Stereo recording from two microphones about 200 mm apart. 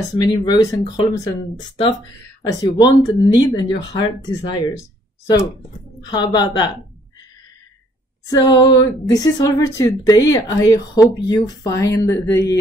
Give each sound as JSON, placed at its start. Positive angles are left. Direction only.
{"t": 0.1, "sound": "speech", "side_deg": 20}
{"t": 2.4, "sound": "speech", "side_deg": 20}
{"t": 5.9, "sound": "speech", "side_deg": 20}
{"t": 8.3, "sound": "speech", "side_deg": 20}